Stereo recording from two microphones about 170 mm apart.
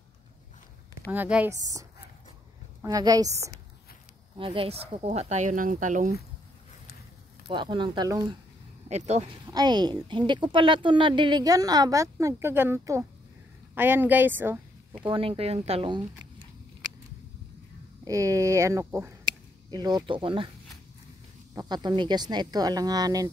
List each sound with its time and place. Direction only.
1.1 s a woman's voice: 10° right (ahead or behind)
4.4 s speech: 35° right (ahead or behind)
7.4 s a woman's voice: 25° right (ahead or behind)
8.8 s speech: 40° right (ahead or behind)
9.5 s a woman's voice: 25° right (ahead or behind)
15.0 s speech: 30° right (ahead or behind)
18.0 s a woman's voice: 20° right (ahead or behind)
21.5 s a woman's voice: 25° right (ahead or behind)